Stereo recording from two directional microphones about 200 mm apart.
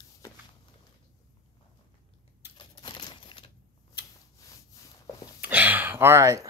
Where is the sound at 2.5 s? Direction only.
20° left (ahead or behind).